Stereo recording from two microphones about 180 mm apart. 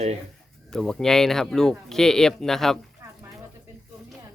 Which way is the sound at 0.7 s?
5° left (ahead or behind).